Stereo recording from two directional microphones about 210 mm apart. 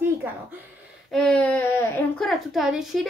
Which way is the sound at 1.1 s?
5° left (ahead or behind).